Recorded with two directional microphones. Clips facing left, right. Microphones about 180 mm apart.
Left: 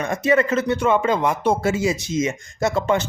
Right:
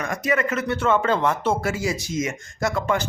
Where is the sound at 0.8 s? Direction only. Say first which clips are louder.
Right 2 dB; 15° left (ahead or behind).